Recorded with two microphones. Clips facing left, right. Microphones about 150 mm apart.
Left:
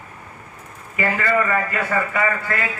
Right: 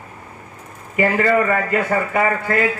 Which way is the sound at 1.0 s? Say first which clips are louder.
Right 4 dB; 30° right (ahead or behind).